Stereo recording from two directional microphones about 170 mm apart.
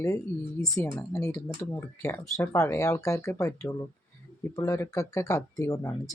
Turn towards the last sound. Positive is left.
turn(degrees=20)  # may be behind; listen again after turning